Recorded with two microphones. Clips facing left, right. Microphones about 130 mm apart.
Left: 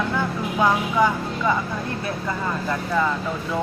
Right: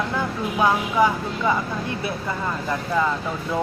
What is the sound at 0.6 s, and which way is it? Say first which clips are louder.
Speech: even; 10° right (ahead or behind).